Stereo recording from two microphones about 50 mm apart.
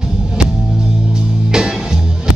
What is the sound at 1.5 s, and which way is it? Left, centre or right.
Music, centre.